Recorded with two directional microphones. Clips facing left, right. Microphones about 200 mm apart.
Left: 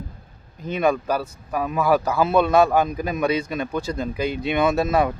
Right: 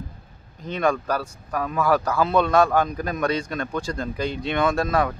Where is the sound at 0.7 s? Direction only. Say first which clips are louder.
Left 2 dB; 10° left (ahead or behind).